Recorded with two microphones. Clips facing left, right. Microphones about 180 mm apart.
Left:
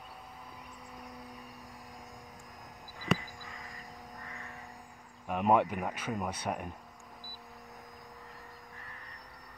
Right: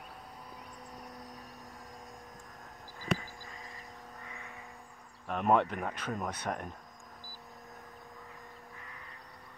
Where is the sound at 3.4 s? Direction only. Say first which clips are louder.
Left 1 dB; 35° right (ahead or behind).